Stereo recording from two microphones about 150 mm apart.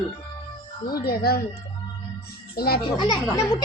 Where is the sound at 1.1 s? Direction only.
90° left.